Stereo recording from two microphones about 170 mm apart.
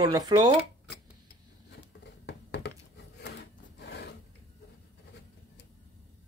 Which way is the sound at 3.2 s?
85° left.